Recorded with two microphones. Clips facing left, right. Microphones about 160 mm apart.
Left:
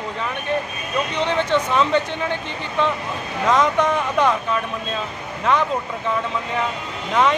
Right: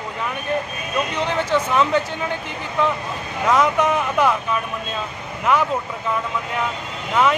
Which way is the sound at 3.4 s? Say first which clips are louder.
Even; 5° right (ahead or behind).